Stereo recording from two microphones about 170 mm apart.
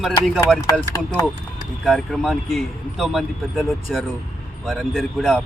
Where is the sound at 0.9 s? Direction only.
20° left (ahead or behind).